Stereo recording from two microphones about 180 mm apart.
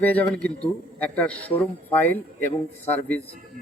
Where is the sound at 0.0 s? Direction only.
10° left (ahead or behind).